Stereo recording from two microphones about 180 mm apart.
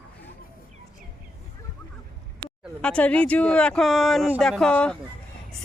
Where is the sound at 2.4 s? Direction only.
5° left (ahead or behind).